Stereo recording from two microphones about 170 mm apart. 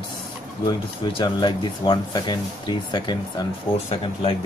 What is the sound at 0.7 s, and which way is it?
Speech, 30° left (ahead or behind).